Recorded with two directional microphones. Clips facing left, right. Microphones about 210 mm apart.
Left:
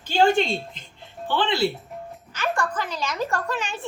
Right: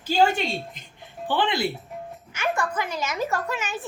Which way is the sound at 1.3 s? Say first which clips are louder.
Left 1 dB; 15° right (ahead or behind).